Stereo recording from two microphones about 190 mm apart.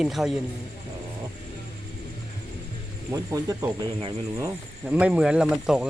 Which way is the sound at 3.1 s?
15° right (ahead or behind).